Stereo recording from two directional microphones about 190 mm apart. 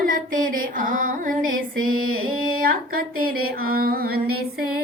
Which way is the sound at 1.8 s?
90° right.